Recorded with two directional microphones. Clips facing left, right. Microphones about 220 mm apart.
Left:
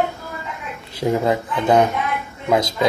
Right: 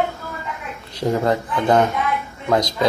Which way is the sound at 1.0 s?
5° left (ahead or behind).